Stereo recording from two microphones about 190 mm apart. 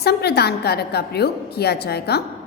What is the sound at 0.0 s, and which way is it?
A woman's voice, 55° left (ahead or behind).